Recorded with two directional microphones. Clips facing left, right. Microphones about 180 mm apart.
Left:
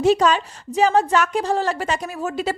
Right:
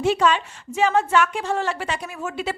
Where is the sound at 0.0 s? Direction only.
40° left (ahead or behind).